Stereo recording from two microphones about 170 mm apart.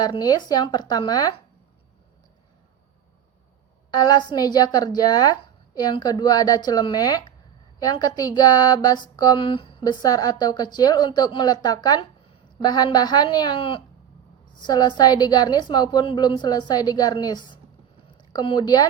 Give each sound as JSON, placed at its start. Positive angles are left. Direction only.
{"t": 0.0, "sound": "speech", "side_deg": 25}
{"t": 3.9, "sound": "speech", "side_deg": 25}